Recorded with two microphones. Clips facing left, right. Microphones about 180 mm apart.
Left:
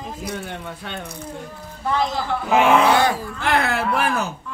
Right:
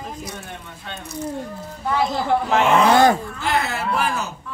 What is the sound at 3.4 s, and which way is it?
Speech, 55° left (ahead or behind).